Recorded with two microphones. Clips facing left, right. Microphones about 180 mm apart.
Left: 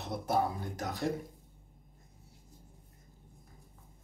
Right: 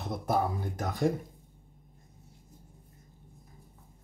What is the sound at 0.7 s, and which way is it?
Speech, 50° right (ahead or behind).